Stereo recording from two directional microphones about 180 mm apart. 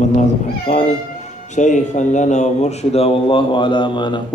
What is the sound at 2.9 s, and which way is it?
Speech, 30° left (ahead or behind).